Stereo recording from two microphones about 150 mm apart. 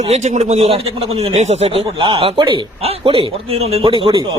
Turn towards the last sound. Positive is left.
turn(degrees=-30)  # may be behind; listen again after turning